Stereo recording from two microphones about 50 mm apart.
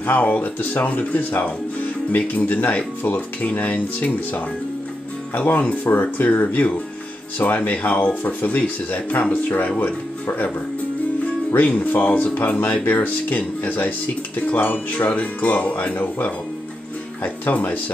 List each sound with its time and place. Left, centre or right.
0.0 s speech: left
5.5 s speech: left
6.4 s speech: left
11.6 s speech: left